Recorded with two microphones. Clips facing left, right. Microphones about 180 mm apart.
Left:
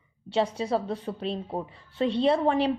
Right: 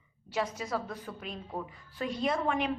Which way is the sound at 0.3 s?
30° left (ahead or behind).